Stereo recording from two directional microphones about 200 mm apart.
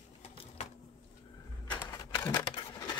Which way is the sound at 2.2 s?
15° left (ahead or behind).